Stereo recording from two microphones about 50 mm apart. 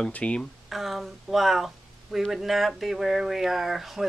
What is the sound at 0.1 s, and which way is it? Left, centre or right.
Speech, left.